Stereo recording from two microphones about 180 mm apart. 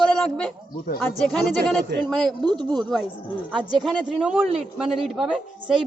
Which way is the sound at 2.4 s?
25° right (ahead or behind).